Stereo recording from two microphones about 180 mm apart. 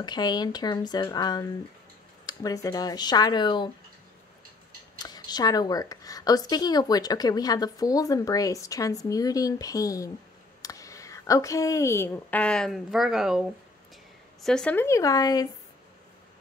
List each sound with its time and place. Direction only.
0.0 s speech: 25° left (ahead or behind)
4.9 s a woman's voice: 20° left (ahead or behind)